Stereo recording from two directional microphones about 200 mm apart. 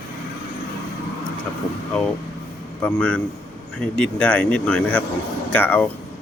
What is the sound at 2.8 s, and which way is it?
Speech, 5° left (ahead or behind).